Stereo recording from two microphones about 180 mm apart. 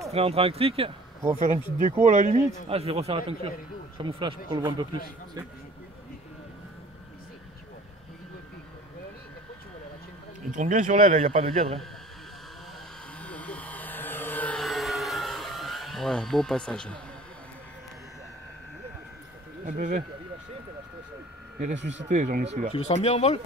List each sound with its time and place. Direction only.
0.1 s a man's voice: 35° right (ahead or behind)
1.3 s a man's voice: 40° right (ahead or behind); by 4.8 s 25° right (ahead or behind)
10.5 s a man's voice: 45° right (ahead or behind)
13.2 s vehicle: 5° left (ahead or behind)
19.6 s a man's voice: 45° right (ahead or behind)
21.7 s speech: 80° right
22.1 s a man's voice: 45° right (ahead or behind)
22.8 s speech: 40° left (ahead or behind)